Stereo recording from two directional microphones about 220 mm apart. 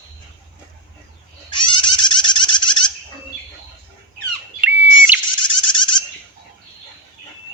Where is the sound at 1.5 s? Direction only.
20° left (ahead or behind).